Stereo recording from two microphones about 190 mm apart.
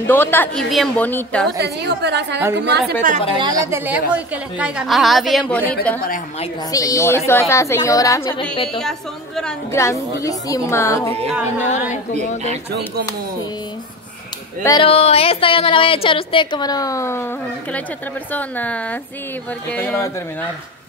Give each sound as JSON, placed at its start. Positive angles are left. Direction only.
{"t": 0.0, "sound": "a woman's voice", "side_deg": 10}
{"t": 1.6, "sound": "a woman's voice", "side_deg": -60}
{"t": 3.0, "sound": "a woman's voice", "side_deg": -40}
{"t": 3.3, "sound": "a woman's voice", "side_deg": -20}
{"t": 8.7, "sound": "a woman's voice", "side_deg": 0}
{"t": 9.7, "sound": "a woman's voice", "side_deg": 15}
{"t": 14.6, "sound": "a woman's voice", "side_deg": 20}
{"t": 14.9, "sound": "a woman's voice", "side_deg": 30}
{"t": 18.3, "sound": "a woman's voice", "side_deg": 10}